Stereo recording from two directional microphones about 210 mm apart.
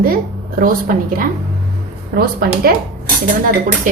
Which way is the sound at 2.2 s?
45° right (ahead or behind).